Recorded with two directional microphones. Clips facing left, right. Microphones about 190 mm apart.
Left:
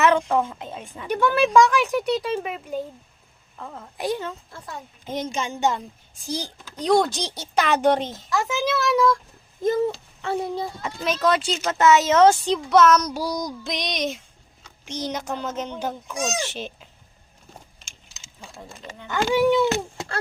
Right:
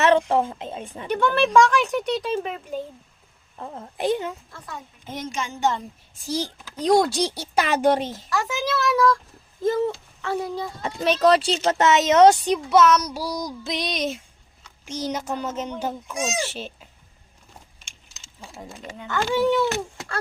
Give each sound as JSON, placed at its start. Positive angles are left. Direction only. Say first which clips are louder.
{"t": 0.0, "sound": "speech", "louder": "right 1 dB", "side_deg": -30}
{"t": 1.1, "sound": "speech", "louder": "left 1 dB", "side_deg": 10}
{"t": 3.6, "sound": "speech", "louder": "right 3 dB", "side_deg": -25}
{"t": 5.0, "sound": "speech", "louder": "left 3 dB", "side_deg": 20}
{"t": 6.2, "sound": "speech", "louder": "right 3 dB", "side_deg": -5}
{"t": 8.3, "sound": "speech", "louder": "left 2 dB", "side_deg": 20}
{"t": 9.6, "sound": "a sound", "louder": "even", "side_deg": 20}
{"t": 10.2, "sound": "speech", "louder": "left 1 dB", "side_deg": 25}
{"t": 10.8, "sound": "speech", "louder": "right 5 dB", "side_deg": -35}
{"t": 18.1, "sound": "a sound", "louder": "right 1 dB", "side_deg": -10}
{"t": 19.0, "sound": "speech", "louder": "left 2 dB", "side_deg": 15}
{"t": 19.6, "sound": "speech", "louder": "left 2 dB", "side_deg": 30}